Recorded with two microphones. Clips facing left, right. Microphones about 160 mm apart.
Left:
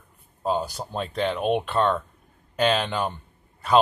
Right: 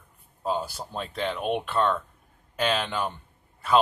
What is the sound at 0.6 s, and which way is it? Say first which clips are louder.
Speech: left 4 dB; 20° left (ahead or behind).